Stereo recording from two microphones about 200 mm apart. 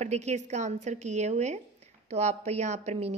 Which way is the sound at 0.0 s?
35° right (ahead or behind).